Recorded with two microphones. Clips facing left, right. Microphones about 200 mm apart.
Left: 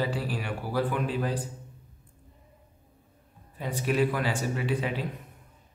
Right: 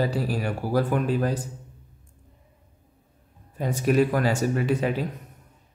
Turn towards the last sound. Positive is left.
turn(degrees=-45)  # may be behind; listen again after turning